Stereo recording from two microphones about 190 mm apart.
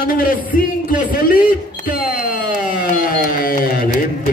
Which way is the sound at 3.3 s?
50° left (ahead or behind).